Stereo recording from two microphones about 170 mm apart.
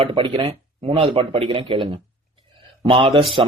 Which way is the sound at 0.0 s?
30° right (ahead or behind).